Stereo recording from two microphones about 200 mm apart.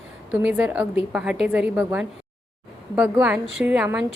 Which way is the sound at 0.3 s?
10° right (ahead or behind).